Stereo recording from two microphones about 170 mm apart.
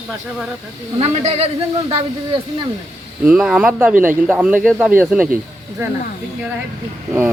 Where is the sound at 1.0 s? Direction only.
40° right (ahead or behind).